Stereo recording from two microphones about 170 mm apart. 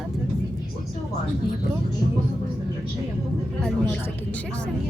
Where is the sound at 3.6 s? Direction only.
10° left (ahead or behind).